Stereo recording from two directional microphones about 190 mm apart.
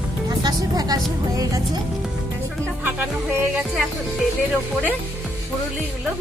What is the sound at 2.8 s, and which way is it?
Music, 5° right (ahead or behind).